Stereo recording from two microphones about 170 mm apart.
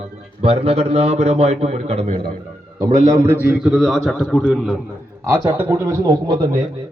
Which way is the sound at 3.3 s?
10° right (ahead or behind).